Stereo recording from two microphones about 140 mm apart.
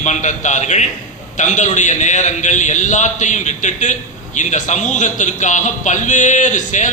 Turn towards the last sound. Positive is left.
turn(degrees=65)  # may be behind; listen again after turning